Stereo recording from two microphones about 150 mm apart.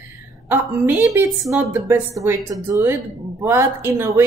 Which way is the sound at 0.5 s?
15° right (ahead or behind).